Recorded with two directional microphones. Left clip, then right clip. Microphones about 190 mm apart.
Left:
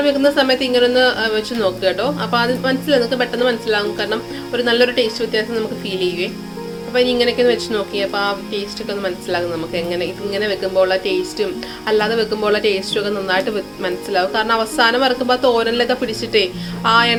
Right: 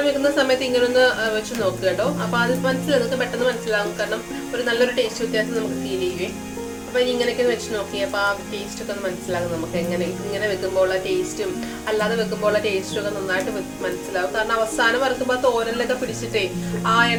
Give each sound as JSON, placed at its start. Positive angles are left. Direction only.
{"t": 0.0, "sound": "speech", "side_deg": 35}
{"t": 6.9, "sound": "speech", "side_deg": 40}
{"t": 10.3, "sound": "speech", "side_deg": 40}
{"t": 14.1, "sound": "a woman's voice", "side_deg": 45}